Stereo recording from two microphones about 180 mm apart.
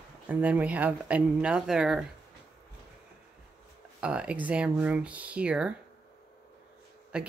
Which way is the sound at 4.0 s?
5° right (ahead or behind).